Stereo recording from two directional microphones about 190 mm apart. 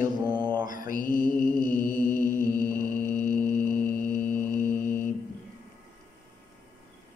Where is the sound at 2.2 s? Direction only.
10° left (ahead or behind).